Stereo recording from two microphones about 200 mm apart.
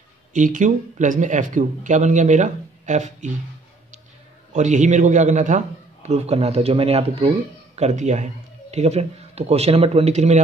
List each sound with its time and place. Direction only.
0.3 s speech: 40° right (ahead or behind)
4.5 s speech: 35° right (ahead or behind)